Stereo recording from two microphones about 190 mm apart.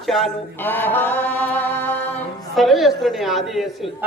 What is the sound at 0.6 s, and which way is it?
Mantra, 10° left (ahead or behind).